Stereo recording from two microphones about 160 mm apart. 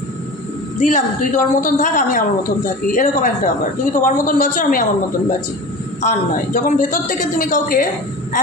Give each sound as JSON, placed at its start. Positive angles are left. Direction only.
{"t": 0.7, "sound": "a woman's voice", "side_deg": 50}
{"t": 6.0, "sound": "a woman's voice", "side_deg": 55}